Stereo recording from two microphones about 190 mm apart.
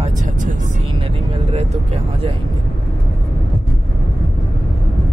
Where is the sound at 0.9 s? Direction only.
30° right (ahead or behind).